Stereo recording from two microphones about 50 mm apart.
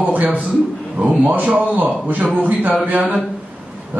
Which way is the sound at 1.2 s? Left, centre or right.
Right.